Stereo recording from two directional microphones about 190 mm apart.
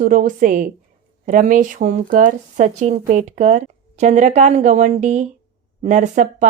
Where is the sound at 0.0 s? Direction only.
45° right (ahead or behind).